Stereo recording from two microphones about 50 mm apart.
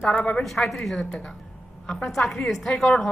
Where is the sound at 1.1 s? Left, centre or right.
Centre.